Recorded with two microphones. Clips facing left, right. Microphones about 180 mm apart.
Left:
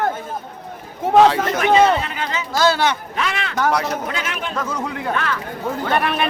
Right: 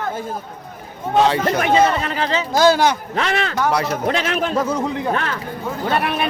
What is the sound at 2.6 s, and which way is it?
Speech, 15° right (ahead or behind).